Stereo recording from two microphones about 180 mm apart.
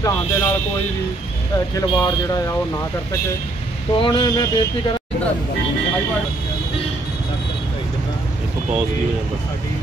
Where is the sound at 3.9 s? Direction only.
30° left (ahead or behind).